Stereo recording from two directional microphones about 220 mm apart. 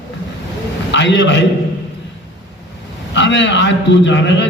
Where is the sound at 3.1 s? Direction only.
55° left (ahead or behind).